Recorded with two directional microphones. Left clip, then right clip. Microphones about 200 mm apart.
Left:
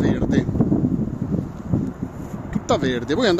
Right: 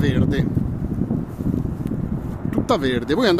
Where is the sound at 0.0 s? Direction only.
15° right (ahead or behind).